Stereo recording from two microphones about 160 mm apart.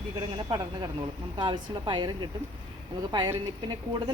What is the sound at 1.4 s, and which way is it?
Speech, 30° right (ahead or behind).